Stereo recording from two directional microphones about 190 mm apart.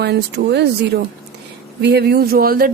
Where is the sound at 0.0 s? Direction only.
60° right (ahead or behind).